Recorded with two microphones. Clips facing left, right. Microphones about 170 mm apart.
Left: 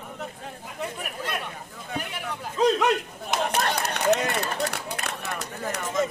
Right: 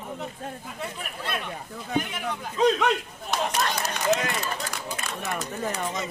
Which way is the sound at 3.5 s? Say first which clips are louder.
Left 1 dB; 60° left (ahead or behind).